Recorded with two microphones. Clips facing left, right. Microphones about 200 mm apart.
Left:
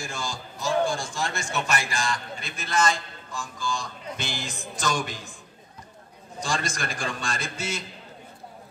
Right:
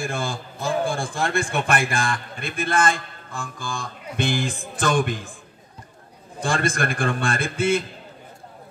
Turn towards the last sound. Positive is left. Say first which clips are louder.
# right 10 dB
turn(degrees=-55)  # may be behind; listen again after turning